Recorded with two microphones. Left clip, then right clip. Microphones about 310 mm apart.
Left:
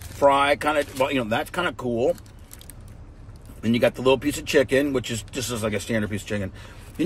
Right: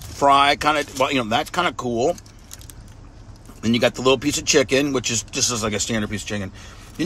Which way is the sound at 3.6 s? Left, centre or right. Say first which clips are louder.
Right 2 dB; centre.